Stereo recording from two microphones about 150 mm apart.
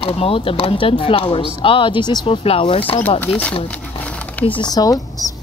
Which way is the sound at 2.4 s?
40° left (ahead or behind).